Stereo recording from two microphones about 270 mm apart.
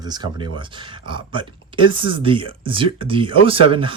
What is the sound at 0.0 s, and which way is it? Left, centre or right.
Speech, centre.